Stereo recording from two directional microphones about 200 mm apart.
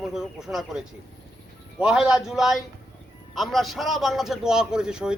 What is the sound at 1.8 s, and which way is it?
A man's voice, 5° right (ahead or behind).